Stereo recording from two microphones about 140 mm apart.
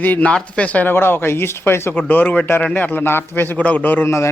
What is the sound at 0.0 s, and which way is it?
Speech, 10° left (ahead or behind).